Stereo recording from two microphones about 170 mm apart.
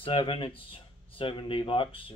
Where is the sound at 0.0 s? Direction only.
30° left (ahead or behind).